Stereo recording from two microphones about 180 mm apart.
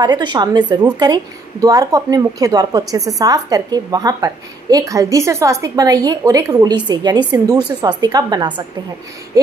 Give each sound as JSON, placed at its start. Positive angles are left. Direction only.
{"t": 0.0, "sound": "speech", "side_deg": -25}